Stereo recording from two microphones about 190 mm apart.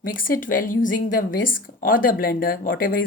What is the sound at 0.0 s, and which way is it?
A woman's voice, 45° left (ahead or behind).